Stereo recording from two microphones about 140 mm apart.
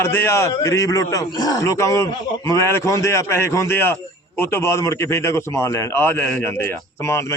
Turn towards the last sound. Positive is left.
turn(degrees=20)  # may be behind; listen again after turning